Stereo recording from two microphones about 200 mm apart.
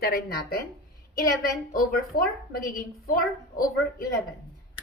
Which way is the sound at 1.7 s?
45° left (ahead or behind).